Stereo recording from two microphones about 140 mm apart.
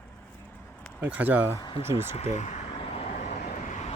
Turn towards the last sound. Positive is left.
turn(degrees=60)  # may be behind; listen again after turning